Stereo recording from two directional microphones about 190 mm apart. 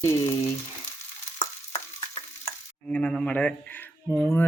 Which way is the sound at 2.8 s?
5° left (ahead or behind).